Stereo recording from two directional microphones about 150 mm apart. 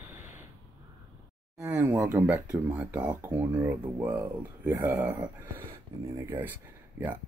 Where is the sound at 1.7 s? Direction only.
10° right (ahead or behind).